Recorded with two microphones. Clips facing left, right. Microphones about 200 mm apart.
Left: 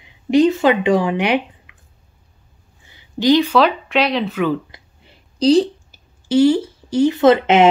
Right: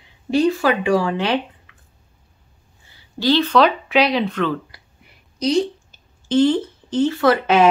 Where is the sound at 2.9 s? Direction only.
20° left (ahead or behind).